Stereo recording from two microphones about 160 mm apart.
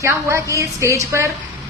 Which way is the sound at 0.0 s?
20° right (ahead or behind).